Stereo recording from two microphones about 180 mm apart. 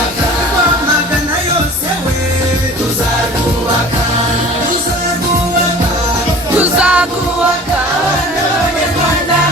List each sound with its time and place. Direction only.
6.6 s music: 10° right (ahead or behind)